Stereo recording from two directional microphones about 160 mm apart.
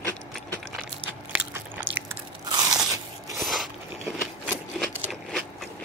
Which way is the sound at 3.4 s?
Centre (ahead or behind).